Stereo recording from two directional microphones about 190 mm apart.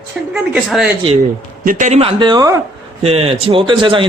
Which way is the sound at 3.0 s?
30° right (ahead or behind).